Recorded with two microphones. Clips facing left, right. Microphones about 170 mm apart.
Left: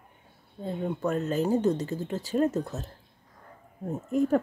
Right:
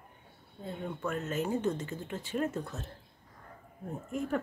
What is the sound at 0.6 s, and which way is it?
Speech, 35° left (ahead or behind).